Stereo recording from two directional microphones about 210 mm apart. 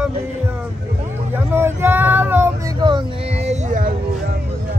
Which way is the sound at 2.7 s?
20° right (ahead or behind).